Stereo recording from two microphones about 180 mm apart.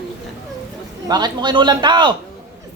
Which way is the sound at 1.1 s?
25° right (ahead or behind).